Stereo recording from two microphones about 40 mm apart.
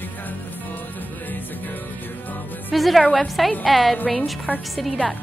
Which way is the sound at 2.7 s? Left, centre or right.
Centre.